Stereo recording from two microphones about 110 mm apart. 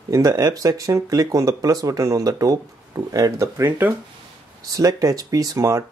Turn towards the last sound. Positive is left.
turn(degrees=-30)  # may be behind; listen again after turning